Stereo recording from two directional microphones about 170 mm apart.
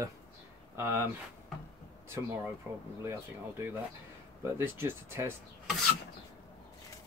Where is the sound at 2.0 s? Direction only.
15° right (ahead or behind).